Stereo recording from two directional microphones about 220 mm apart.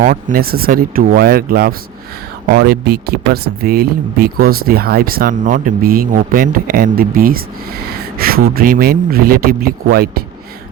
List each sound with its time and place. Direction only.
0.0 s speech: 35° right (ahead or behind)